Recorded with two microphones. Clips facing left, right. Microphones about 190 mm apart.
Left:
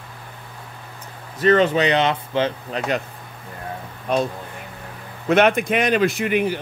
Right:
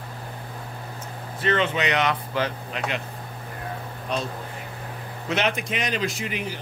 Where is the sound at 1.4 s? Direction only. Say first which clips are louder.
Left 7 dB; 40° left (ahead or behind).